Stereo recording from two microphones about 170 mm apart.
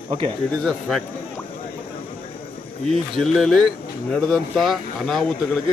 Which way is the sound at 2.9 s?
Centre (ahead or behind).